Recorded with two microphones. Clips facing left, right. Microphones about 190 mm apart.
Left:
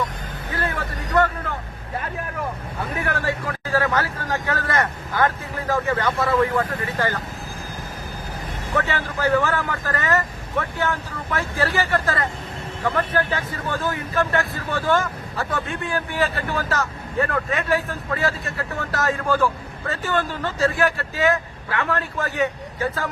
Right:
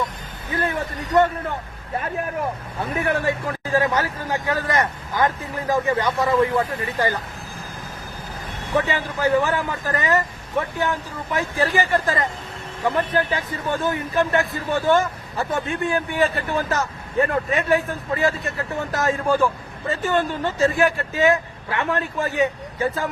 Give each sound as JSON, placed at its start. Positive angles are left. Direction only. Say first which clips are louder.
{"t": 0.5, "sound": "a sound", "louder": "right 3 dB", "side_deg": -15}
{"t": 3.0, "sound": "speech", "louder": "right 4 dB", "side_deg": -20}
{"t": 8.7, "sound": "speech", "louder": "right 2 dB", "side_deg": -15}